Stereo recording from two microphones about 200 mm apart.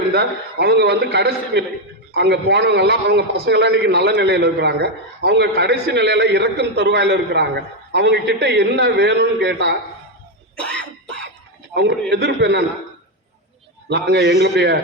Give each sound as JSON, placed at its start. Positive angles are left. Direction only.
{"t": 0.1, "sound": "a man's voice", "side_deg": -55}
{"t": 10.6, "sound": "cough", "side_deg": 5}
{"t": 11.7, "sound": "a man's voice", "side_deg": -55}
{"t": 13.9, "sound": "a man's voice", "side_deg": -55}